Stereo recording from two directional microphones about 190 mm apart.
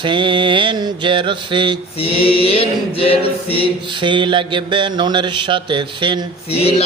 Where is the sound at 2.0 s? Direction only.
30° left (ahead or behind).